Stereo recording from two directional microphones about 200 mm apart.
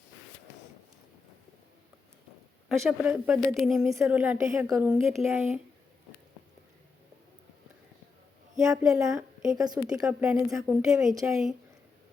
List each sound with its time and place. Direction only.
2.6 s a woman's voice: centre (ahead or behind)
8.8 s a woman's voice: 5° right (ahead or behind)